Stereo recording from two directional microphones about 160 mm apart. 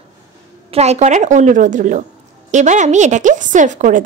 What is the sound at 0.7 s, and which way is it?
A woman's voice, 40° right (ahead or behind).